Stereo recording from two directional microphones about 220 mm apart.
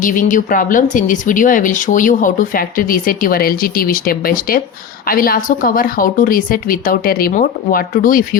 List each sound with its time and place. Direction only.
0.0 s speech: 35° left (ahead or behind)